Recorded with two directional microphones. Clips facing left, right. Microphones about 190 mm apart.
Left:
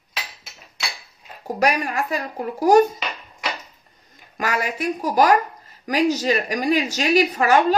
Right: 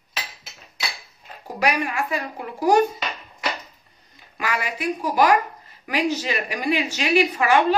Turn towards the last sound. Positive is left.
turn(degrees=40)  # may be behind; listen again after turning